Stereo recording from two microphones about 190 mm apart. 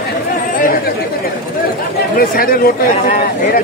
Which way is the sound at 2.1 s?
50° left (ahead or behind).